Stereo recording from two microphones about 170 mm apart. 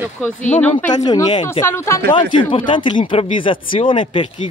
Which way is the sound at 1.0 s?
25° left (ahead or behind).